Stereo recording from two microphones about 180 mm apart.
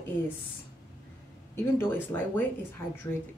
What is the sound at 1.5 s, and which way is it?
Speech, 10° left (ahead or behind).